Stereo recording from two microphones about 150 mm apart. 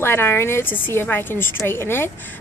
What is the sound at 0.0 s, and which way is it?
A woman's voice, 15° left (ahead or behind).